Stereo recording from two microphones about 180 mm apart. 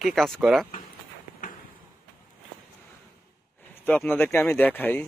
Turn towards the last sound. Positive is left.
turn(degrees=10)  # may be behind; listen again after turning